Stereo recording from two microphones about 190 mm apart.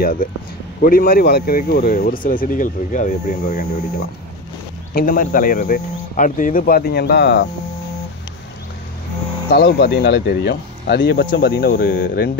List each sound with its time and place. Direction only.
0.0 s speech: 45° left (ahead or behind)
4.9 s speech: 45° left (ahead or behind)
9.5 s speech: 55° left (ahead or behind)